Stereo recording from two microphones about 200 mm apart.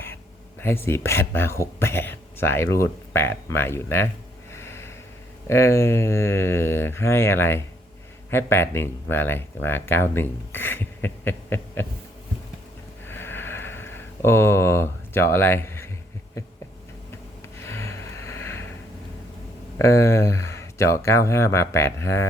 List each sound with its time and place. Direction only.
0.6 s speech: 10° left (ahead or behind)
4.5 s snort: 10° left (ahead or behind)
5.5 s speech: 15° left (ahead or behind)
13.1 s sniff: 10° left (ahead or behind)
17.6 s vehicle: 10° left (ahead or behind)
19.8 s speech: 15° left (ahead or behind)